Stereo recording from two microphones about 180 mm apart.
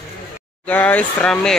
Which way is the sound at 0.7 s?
10° left (ahead or behind).